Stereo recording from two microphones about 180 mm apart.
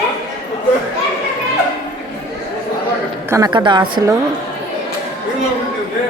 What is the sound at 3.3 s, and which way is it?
Speech, 20° right (ahead or behind).